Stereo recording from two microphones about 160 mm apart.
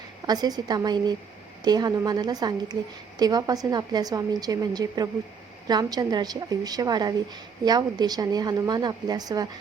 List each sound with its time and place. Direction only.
0.3 s a woman's voice: 25° right (ahead or behind)